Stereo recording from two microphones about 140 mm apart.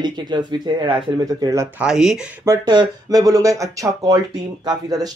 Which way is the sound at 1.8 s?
5° right (ahead or behind).